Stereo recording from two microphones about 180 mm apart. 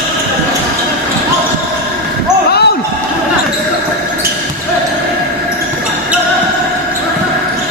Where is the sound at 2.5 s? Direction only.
65° left (ahead or behind).